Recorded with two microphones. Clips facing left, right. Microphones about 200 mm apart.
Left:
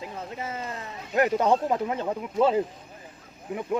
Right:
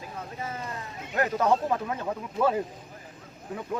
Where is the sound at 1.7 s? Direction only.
20° left (ahead or behind).